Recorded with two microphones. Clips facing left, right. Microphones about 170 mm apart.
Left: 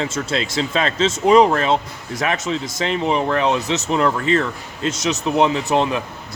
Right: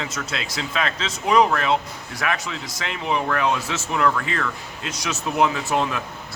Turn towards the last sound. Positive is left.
turn(degrees=20)  # may be behind; listen again after turning